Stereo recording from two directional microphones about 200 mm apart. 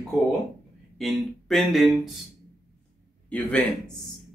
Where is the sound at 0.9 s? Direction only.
Centre (ahead or behind).